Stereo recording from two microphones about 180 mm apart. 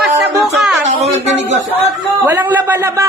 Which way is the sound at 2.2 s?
10° right (ahead or behind).